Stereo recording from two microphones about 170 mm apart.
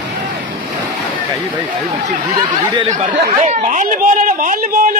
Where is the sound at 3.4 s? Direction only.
45° right (ahead or behind).